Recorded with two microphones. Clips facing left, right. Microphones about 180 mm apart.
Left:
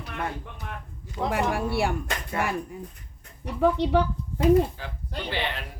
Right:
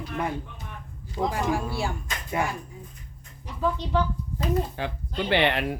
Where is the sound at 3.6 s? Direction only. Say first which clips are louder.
Left 4 dB; 60° left (ahead or behind).